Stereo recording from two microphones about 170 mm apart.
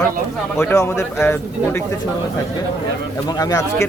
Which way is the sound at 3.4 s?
20° left (ahead or behind).